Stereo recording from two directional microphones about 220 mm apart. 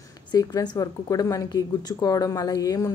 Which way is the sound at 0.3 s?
20° left (ahead or behind).